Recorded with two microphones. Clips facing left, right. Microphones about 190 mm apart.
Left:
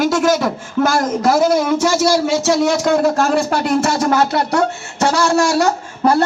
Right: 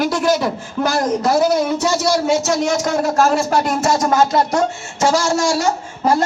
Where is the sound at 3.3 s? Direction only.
60° left (ahead or behind).